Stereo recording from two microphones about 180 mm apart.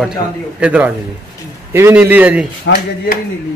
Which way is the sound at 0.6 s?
5° right (ahead or behind).